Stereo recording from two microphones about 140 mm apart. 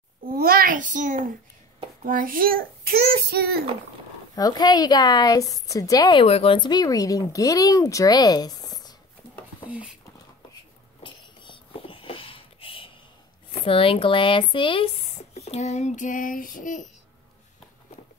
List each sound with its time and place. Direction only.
0.2 s a child's voice: 90° right; by 1.3 s 65° right (ahead or behind)
2.0 s child singing: 85° right
4.4 s speech: 30° left (ahead or behind)
6.2 s speech: 45° left (ahead or behind); by 8.9 s 30° left (ahead or behind)
11.0 s a sound: 35° left (ahead or behind)
13.5 s speech: 40° left (ahead or behind)
15.0 s child singing: 50° left (ahead or behind)